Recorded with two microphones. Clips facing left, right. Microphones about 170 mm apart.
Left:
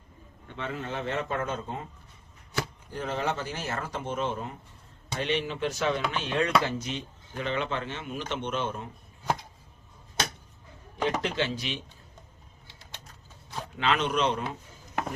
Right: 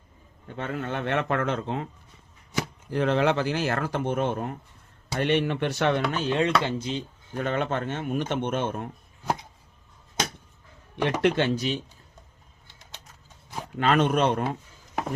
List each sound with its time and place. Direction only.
0.4 s speech: 45° right (ahead or behind); by 1.9 s 85° right
2.9 s speech: 70° right (ahead or behind)
6.1 s a sound: 35° right (ahead or behind)
6.6 s speech: 25° right (ahead or behind)
7.3 s speech: 50° right (ahead or behind)
10.9 s speech: 65° right (ahead or behind); by 11.8 s 40° right (ahead or behind)
13.7 s speech: 50° right (ahead or behind)